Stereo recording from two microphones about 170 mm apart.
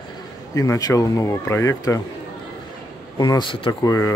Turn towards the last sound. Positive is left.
turn(degrees=15)  # may be behind; listen again after turning